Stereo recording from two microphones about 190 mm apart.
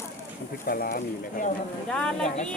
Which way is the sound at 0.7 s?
50° left (ahead or behind).